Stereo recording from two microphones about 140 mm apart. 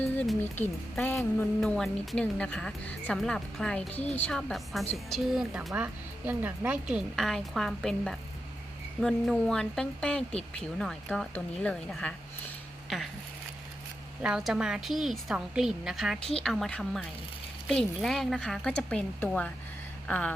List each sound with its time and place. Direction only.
0.0 s music: 10° left (ahead or behind)
1.0 s speech: 15° left (ahead or behind)
1.6 s speech: 5° left (ahead or behind)
14.2 s speech: 5° right (ahead or behind)
20.1 s a sound: 10° left (ahead or behind)